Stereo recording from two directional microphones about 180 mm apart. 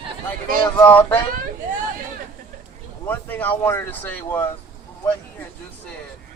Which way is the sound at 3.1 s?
10° left (ahead or behind).